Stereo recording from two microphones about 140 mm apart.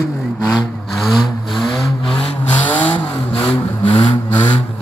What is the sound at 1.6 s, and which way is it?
Vehicle, centre (ahead or behind).